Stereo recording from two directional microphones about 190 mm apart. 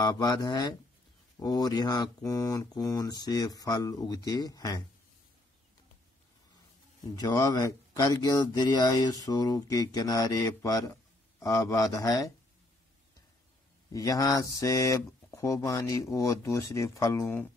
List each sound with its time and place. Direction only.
0.0 s speech: 20° left (ahead or behind)
7.2 s speech: 20° left (ahead or behind)
13.9 s speech: 20° left (ahead or behind)